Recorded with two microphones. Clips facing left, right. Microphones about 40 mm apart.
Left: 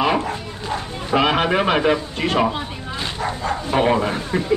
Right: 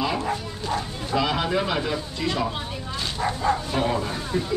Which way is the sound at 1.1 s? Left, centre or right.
Left.